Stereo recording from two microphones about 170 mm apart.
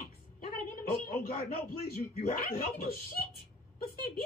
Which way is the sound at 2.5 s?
60° left (ahead or behind).